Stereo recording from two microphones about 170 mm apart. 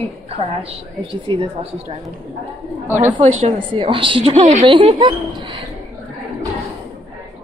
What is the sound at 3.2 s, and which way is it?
A woman's voice, 40° right (ahead or behind).